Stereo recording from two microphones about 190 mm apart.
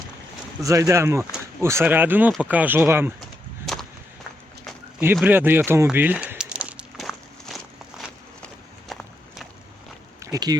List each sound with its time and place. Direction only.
0.6 s speech: 15° right (ahead or behind)
5.1 s a sound: 10° right (ahead or behind)
8.9 s horse: centre (ahead or behind)
10.3 s speech: 20° right (ahead or behind)